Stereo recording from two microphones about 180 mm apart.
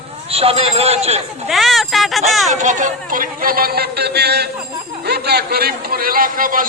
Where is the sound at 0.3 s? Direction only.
35° right (ahead or behind).